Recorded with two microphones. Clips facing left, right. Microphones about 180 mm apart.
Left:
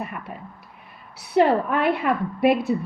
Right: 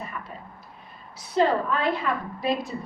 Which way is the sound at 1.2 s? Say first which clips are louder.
Left 4 dB; 65° left (ahead or behind).